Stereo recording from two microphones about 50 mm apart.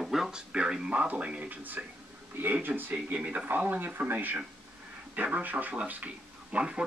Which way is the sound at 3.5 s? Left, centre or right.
Right.